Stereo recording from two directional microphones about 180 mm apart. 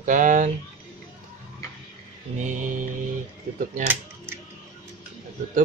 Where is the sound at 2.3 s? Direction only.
45° right (ahead or behind).